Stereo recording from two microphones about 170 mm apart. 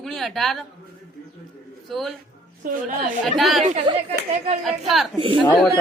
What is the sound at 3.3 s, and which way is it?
Speech, centre (ahead or behind).